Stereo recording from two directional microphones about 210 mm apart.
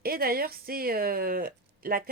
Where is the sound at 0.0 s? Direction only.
45° right (ahead or behind).